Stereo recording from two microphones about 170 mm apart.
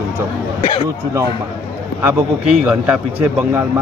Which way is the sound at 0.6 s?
30° left (ahead or behind).